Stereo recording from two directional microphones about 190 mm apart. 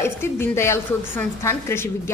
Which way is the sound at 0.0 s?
15° left (ahead or behind).